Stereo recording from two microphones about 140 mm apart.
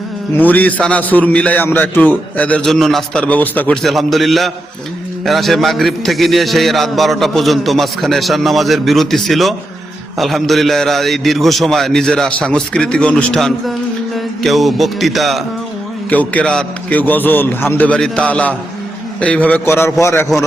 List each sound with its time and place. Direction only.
0.3 s a man's voice: 10° left (ahead or behind)
3.8 s a man's voice: centre (ahead or behind)
16.0 s a man's voice: 10° left (ahead or behind)